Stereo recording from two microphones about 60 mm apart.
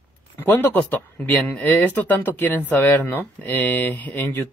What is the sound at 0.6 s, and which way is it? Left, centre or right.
Speech, left.